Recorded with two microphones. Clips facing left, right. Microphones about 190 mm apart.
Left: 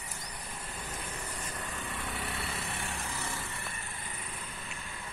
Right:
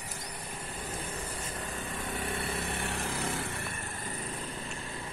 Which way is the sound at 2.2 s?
50° right (ahead or behind).